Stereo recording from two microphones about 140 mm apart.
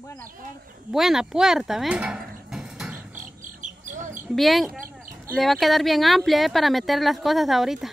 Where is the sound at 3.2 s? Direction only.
65° right (ahead or behind).